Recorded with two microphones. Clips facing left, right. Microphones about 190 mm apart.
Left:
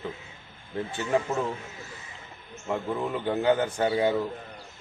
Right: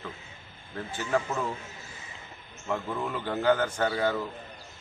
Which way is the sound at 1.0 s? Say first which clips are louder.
Left 2 dB; 20° left (ahead or behind).